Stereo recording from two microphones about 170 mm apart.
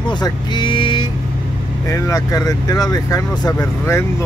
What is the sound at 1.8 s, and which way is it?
Speech, 20° left (ahead or behind).